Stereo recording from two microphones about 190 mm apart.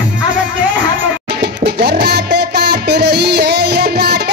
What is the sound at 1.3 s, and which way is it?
Music, 60° right (ahead or behind).